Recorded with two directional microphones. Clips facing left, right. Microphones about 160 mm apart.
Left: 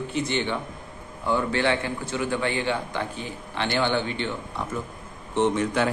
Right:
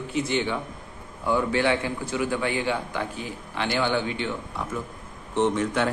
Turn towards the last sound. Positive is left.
turn(degrees=0)  # may be behind; listen again after turning